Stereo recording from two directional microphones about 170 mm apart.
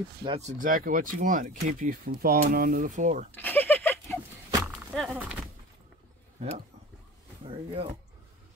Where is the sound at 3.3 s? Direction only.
10° left (ahead or behind).